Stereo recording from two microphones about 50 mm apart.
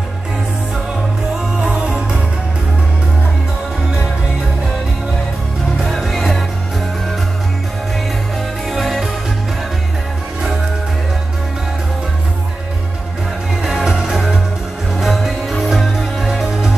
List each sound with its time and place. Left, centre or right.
1.6 s music: centre
5.9 s music: centre
8.6 s music: centre
13.6 s music: centre